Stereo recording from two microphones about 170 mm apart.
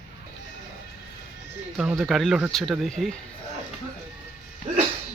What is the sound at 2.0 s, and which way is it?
A man's voice, centre (ahead or behind).